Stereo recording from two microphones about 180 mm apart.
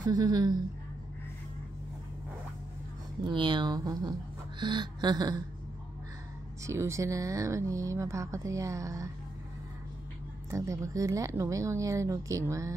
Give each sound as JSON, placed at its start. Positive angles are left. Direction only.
{"t": 0.0, "sound": "speech", "side_deg": -20}
{"t": 3.3, "sound": "speech", "side_deg": -25}
{"t": 6.6, "sound": "speech", "side_deg": -15}
{"t": 10.5, "sound": "speech", "side_deg": -15}